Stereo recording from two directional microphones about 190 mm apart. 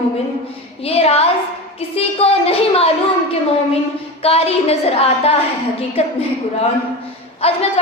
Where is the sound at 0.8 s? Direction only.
35° left (ahead or behind).